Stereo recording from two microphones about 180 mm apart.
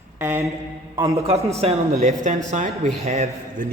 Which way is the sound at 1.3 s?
35° right (ahead or behind).